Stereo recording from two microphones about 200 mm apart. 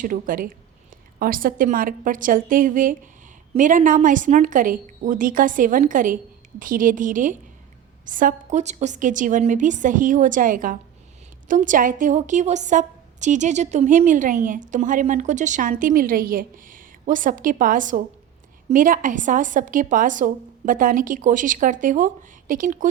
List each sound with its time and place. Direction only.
0.0 s a woman's voice: 45° right (ahead or behind)